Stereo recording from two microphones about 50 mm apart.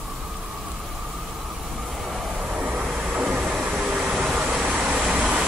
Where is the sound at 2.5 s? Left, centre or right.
Right.